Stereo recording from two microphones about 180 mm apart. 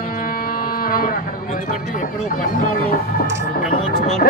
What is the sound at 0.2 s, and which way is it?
Speech, 55° left (ahead or behind).